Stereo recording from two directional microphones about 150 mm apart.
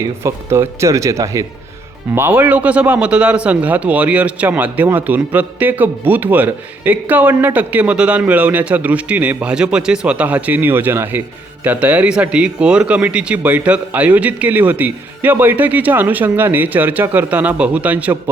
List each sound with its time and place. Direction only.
0.2 s a man's voice: 15° right (ahead or behind)